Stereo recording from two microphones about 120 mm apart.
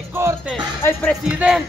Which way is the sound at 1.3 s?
5° right (ahead or behind).